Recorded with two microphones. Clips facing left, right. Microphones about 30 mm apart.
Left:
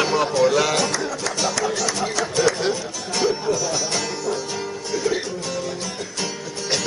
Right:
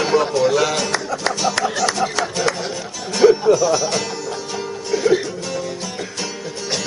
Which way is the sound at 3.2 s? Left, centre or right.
Right.